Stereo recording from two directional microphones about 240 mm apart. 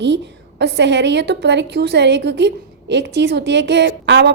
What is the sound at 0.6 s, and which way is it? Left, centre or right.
A woman's voice, right.